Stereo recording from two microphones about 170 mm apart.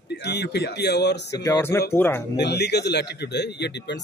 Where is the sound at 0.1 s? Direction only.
75° left (ahead or behind).